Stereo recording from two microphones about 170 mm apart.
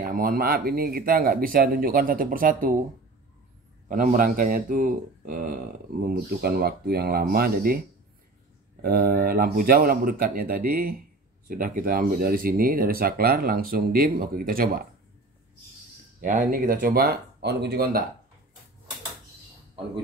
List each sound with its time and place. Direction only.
0.0 s speech: 55° right (ahead or behind)
3.9 s speech: 50° right (ahead or behind)
8.8 s speech: 60° right (ahead or behind)
16.2 s speech: 55° right (ahead or behind); by 18.0 s 70° right (ahead or behind)